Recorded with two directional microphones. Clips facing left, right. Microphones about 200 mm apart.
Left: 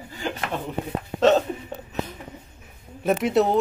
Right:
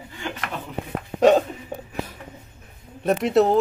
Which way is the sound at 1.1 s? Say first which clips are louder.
Right 2 dB; 15° right (ahead or behind).